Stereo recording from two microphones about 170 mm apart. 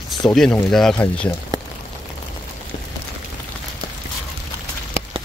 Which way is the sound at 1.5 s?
25° right (ahead or behind).